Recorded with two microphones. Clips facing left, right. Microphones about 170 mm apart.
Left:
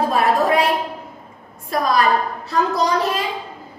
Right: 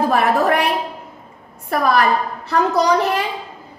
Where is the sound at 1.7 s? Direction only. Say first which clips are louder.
Right 1 dB; 65° right (ahead or behind).